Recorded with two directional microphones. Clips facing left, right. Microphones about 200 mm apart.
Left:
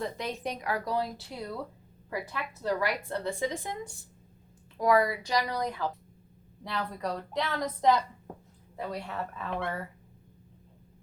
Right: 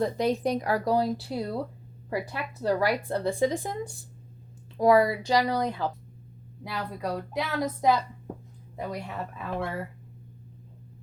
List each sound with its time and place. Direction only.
0.0 s a woman's voice: 35° right (ahead or behind)
4.8 s speech: 30° right (ahead or behind)
6.7 s a woman's voice: 10° right (ahead or behind)